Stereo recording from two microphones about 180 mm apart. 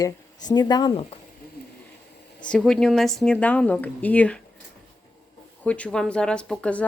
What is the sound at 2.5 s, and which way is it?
Speech, 5° left (ahead or behind).